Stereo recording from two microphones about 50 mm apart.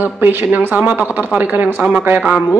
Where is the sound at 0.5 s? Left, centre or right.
Right.